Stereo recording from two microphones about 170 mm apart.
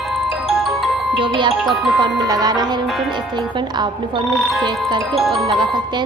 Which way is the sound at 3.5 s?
25° right (ahead or behind).